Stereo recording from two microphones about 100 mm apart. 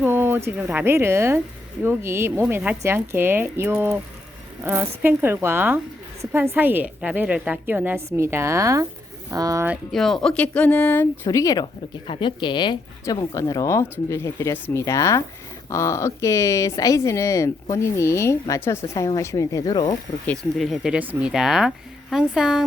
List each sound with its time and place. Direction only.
0.0 s a sound: 25° right (ahead or behind)
0.7 s a woman's voice: 20° right (ahead or behind); by 9.6 s 35° right (ahead or behind)
9.9 s speech: 5° left (ahead or behind); by 11.3 s 20° left (ahead or behind)
11.3 s speech: 35° left (ahead or behind)
12.0 s speech: 60° left (ahead or behind)
13.1 s speech: 35° left (ahead or behind)
20.6 s a woman's voice: 5° right (ahead or behind)
21.0 s a woman's voice: 15° right (ahead or behind)